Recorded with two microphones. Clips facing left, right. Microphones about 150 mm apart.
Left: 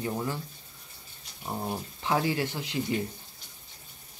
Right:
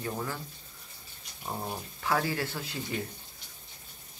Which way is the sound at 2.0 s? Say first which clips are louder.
Left 2 dB; 15° left (ahead or behind).